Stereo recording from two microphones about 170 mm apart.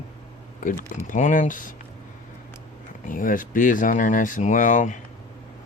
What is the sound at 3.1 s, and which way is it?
Speech, 50° left (ahead or behind).